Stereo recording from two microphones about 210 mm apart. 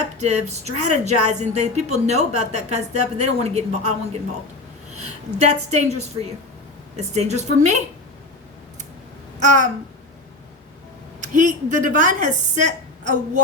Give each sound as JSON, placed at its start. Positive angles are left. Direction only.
{"t": 0.2, "sound": "speech", "side_deg": -30}
{"t": 5.5, "sound": "speech", "side_deg": -30}
{"t": 9.4, "sound": "a sound", "side_deg": -35}
{"t": 11.2, "sound": "speech", "side_deg": -35}